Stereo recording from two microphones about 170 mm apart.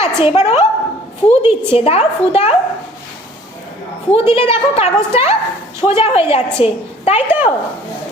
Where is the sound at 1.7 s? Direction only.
35° left (ahead or behind).